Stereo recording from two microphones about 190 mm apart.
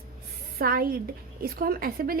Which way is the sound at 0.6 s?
50° right (ahead or behind).